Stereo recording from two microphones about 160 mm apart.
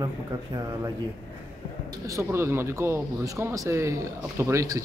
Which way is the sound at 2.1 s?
15° right (ahead or behind).